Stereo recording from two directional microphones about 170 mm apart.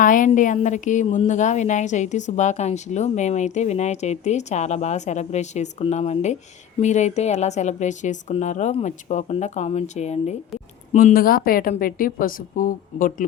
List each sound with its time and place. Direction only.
0.0 s a woman's voice: 50° left (ahead or behind)
10.9 s a woman's voice: 55° left (ahead or behind)